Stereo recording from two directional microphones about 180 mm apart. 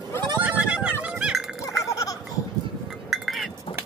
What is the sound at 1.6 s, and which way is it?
Goat, 20° left (ahead or behind).